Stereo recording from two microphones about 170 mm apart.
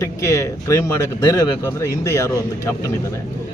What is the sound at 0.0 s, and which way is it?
Speech, 20° left (ahead or behind).